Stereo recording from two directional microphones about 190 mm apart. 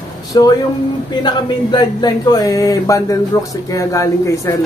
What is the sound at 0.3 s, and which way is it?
Speech, 20° left (ahead or behind).